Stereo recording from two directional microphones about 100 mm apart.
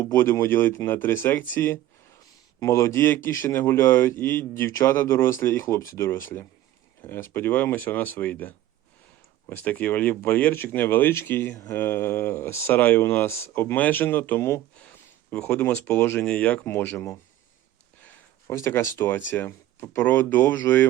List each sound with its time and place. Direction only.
0.0 s speech: 25° left (ahead or behind)
14.8 s a sound: 15° left (ahead or behind)
16.0 s speech: 25° left (ahead or behind)
16.2 s speech: 15° left (ahead or behind)
18.4 s speech: 30° left (ahead or behind)